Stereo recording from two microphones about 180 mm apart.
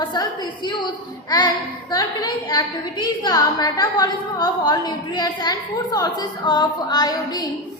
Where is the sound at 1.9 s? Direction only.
20° left (ahead or behind).